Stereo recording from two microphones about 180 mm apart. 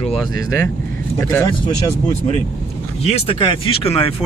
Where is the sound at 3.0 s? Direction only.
35° left (ahead or behind).